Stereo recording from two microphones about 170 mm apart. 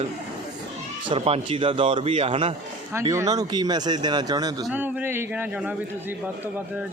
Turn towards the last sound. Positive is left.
turn(degrees=-10)  # may be behind; listen again after turning